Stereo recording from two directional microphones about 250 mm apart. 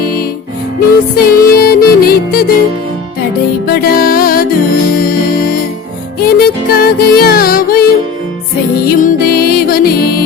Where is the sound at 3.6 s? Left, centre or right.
Left.